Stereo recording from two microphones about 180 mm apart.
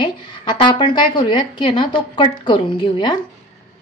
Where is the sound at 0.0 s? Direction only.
25° left (ahead or behind).